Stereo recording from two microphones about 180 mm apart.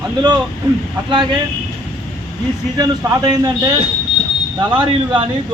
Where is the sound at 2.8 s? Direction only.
20° right (ahead or behind).